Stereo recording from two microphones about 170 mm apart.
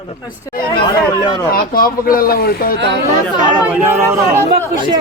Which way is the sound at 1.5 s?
60° left (ahead or behind).